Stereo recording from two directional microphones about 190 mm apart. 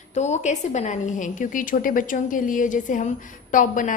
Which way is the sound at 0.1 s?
35° left (ahead or behind).